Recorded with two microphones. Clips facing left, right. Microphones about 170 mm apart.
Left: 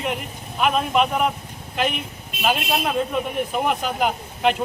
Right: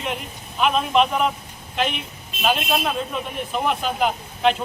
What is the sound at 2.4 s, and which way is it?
Speech, 10° left (ahead or behind).